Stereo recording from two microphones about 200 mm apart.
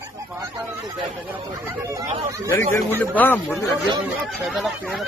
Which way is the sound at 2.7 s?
10° left (ahead or behind).